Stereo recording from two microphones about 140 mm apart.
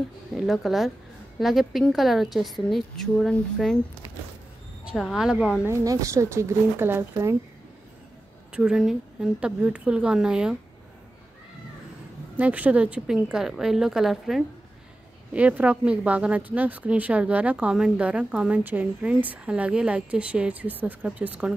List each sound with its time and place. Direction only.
0.4 s a woman's voice: centre (ahead or behind)
4.9 s a woman's voice: centre (ahead or behind)
5.7 s speech: 25° right (ahead or behind)
8.5 s a woman's voice: 5° right (ahead or behind)
12.4 s a woman's voice: 10° right (ahead or behind)